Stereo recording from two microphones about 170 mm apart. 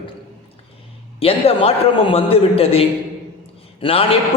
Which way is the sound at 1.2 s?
35° left (ahead or behind).